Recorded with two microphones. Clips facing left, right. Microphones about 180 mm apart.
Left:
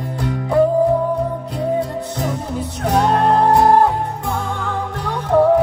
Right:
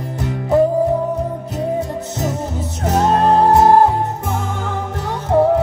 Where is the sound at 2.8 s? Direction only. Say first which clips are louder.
Right 1 dB; 25° right (ahead or behind).